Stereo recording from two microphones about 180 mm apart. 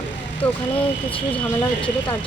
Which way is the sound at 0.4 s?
10° left (ahead or behind).